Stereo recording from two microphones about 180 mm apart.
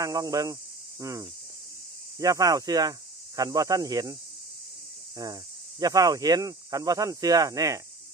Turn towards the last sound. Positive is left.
turn(degrees=-20)  # may be behind; listen again after turning